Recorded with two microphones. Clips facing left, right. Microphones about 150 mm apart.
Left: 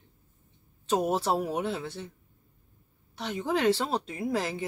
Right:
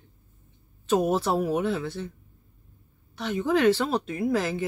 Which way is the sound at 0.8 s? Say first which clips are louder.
Right 3 dB; 25° left (ahead or behind).